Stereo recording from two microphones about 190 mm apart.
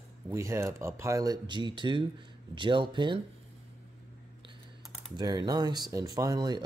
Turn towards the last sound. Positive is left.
turn(degrees=-20)  # may be behind; listen again after turning